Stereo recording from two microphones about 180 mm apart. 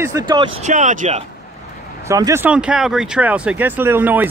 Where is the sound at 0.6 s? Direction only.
40° right (ahead or behind).